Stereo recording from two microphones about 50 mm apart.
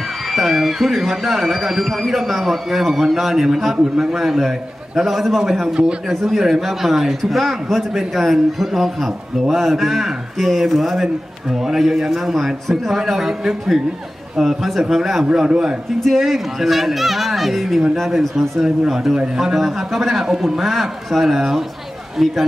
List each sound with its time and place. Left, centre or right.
0.3 s a man's voice: centre
16.0 s a man's voice: centre